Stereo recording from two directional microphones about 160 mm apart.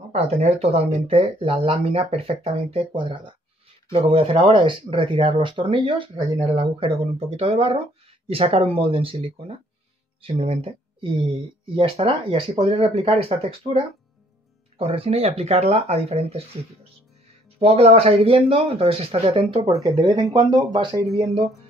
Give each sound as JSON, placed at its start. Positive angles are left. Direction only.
{"t": 0.1, "sound": "speech", "side_deg": -40}
{"t": 14.8, "sound": "speech", "side_deg": -35}
{"t": 17.6, "sound": "speech", "side_deg": -40}